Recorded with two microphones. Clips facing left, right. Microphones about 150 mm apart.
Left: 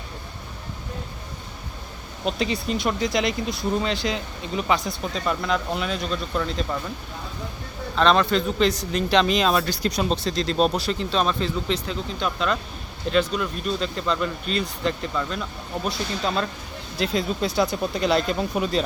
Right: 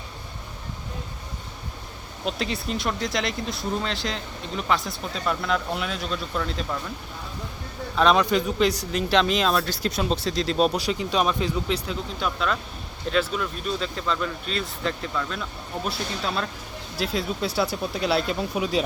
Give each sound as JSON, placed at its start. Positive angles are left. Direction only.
{"t": 2.2, "sound": "speech", "side_deg": 0}
{"t": 7.9, "sound": "speech", "side_deg": -10}